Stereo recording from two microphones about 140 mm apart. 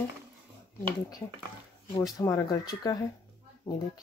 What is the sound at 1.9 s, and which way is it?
Speech, 25° left (ahead or behind).